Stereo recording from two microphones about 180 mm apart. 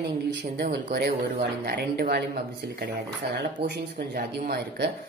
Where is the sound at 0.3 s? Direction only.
65° right (ahead or behind).